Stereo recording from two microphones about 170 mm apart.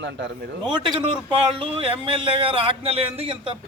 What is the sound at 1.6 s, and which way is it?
Speech, 30° right (ahead or behind).